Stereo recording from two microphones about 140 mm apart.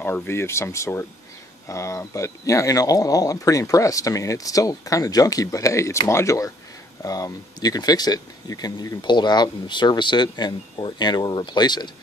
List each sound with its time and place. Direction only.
0.0 s speech: 15° left (ahead or behind); by 11.9 s 30° left (ahead or behind)